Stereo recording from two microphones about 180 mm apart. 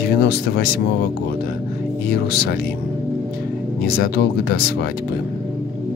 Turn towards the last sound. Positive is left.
turn(degrees=60)  # may be behind; listen again after turning